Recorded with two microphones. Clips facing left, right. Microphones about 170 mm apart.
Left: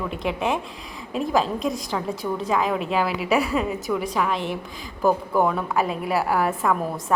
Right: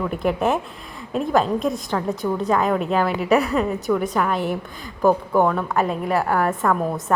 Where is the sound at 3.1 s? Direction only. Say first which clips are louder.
Right 3 dB; 45° right (ahead or behind).